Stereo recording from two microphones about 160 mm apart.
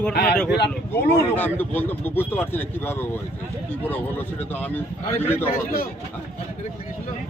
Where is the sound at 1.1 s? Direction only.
10° left (ahead or behind).